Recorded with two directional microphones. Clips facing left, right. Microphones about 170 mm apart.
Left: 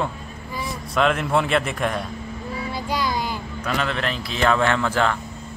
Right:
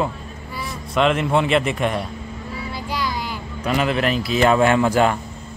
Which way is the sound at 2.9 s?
20° left (ahead or behind).